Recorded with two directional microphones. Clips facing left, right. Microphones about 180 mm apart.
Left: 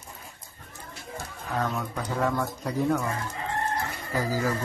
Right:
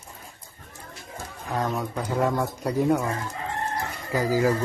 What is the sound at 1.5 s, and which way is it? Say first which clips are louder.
Speech: right 2 dB; 10° right (ahead or behind).